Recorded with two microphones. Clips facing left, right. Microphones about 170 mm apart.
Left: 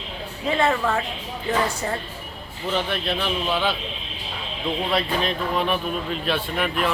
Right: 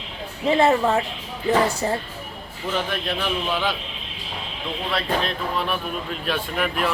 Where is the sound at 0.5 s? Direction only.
25° right (ahead or behind).